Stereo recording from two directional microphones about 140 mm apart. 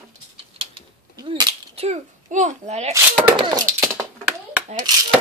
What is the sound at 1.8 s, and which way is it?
A child's voice, 55° right (ahead or behind).